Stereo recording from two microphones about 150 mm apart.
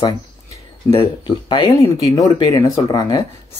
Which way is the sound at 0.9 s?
35° left (ahead or behind).